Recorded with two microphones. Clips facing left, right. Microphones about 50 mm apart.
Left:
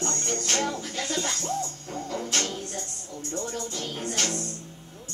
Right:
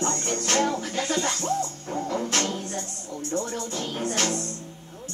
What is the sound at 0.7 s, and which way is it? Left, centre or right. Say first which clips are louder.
Music: right 4 dB; right.